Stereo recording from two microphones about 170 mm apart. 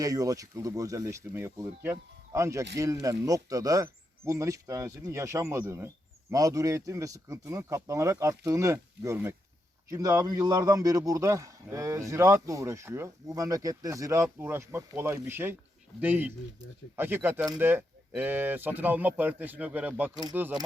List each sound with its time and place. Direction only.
0.0 s a man's voice: 20° right (ahead or behind)